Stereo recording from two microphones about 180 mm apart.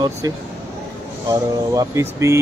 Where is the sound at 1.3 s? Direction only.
15° right (ahead or behind).